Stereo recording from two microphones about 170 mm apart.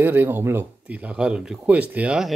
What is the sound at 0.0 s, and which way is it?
Speech, 10° right (ahead or behind).